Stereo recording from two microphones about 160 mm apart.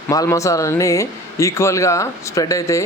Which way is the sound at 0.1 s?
20° left (ahead or behind).